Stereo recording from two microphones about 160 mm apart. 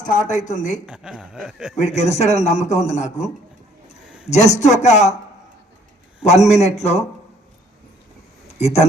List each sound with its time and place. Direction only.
0.0 s a man's voice: 50° left (ahead or behind)
0.9 s speech: 5° right (ahead or behind)
1.7 s a man's voice: 45° left (ahead or behind)
4.3 s a man's voice: 45° left (ahead or behind)
6.2 s a man's voice: 45° left (ahead or behind)
8.5 s speech: 40° left (ahead or behind)